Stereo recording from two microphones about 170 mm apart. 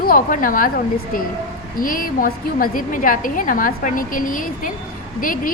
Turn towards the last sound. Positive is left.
turn(degrees=55)  # may be behind; listen again after turning